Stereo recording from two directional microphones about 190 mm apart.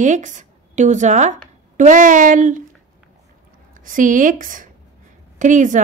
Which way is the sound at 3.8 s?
45° right (ahead or behind).